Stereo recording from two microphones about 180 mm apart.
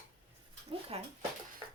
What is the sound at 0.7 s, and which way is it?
Speech, 30° right (ahead or behind).